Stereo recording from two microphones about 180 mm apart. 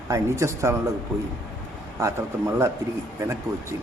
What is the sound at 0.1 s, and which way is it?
Speech, 15° right (ahead or behind).